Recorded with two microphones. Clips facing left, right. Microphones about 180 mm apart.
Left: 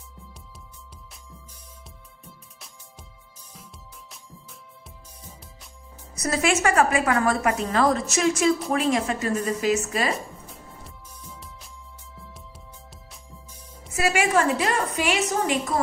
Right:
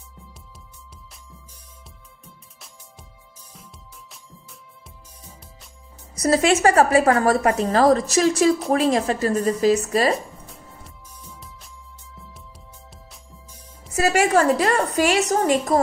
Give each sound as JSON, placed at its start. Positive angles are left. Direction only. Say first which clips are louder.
{"t": 2.2, "sound": "music", "louder": "even", "side_deg": 0}
{"t": 6.1, "sound": "a woman's voice", "louder": "right 5 dB", "side_deg": -35}
{"t": 10.1, "sound": "music", "louder": "right 5 dB", "side_deg": 0}
{"t": 13.9, "sound": "a woman's voice", "louder": "right 4 dB", "side_deg": -40}